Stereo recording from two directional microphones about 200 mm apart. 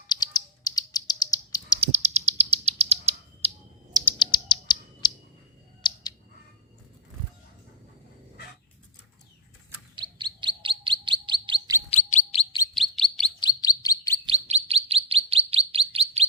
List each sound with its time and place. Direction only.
0.1 s bird: 20° left (ahead or behind)
1.8 s bird: 35° right (ahead or behind)
4.2 s bird: 25° left (ahead or behind)
5.8 s a sound: 20° left (ahead or behind)
9.9 s chirp: 25° right (ahead or behind)
11.9 s bird: 30° left (ahead or behind)
12.7 s chirp: centre (ahead or behind)
13.4 s chirp: 20° left (ahead or behind)
14.3 s chirp: 30° right (ahead or behind)